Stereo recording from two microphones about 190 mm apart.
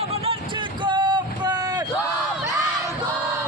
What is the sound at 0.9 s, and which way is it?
Vehicle, 25° right (ahead or behind).